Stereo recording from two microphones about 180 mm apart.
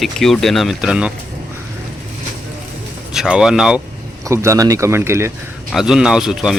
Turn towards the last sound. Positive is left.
turn(degrees=-5)  # may be behind; listen again after turning